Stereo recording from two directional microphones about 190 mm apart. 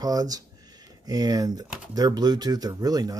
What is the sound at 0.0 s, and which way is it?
A man's voice, 20° right (ahead or behind).